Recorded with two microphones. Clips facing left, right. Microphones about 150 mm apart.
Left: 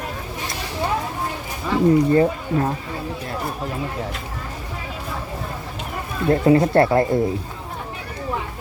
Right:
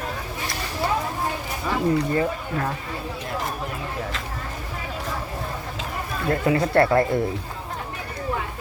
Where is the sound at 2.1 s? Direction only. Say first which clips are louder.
Left 6 dB; 30° left (ahead or behind).